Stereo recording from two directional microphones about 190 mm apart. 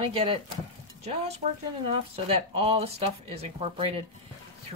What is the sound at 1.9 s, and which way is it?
Speech, 30° right (ahead or behind).